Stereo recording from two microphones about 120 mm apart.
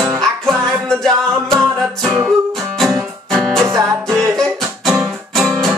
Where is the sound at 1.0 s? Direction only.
Centre (ahead or behind).